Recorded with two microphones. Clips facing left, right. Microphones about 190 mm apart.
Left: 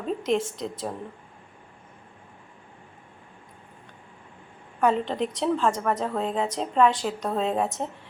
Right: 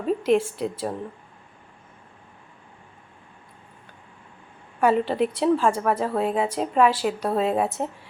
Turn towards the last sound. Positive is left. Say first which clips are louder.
# right 3 dB
turn(degrees=-10)  # may be behind; listen again after turning